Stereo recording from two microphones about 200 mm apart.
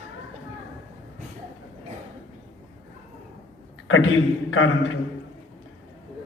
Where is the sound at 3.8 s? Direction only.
75° left (ahead or behind).